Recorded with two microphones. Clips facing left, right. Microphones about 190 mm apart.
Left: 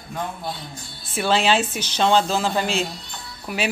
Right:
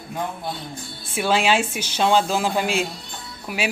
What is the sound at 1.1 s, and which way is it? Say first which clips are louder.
A woman's voice: even; 10° right (ahead or behind).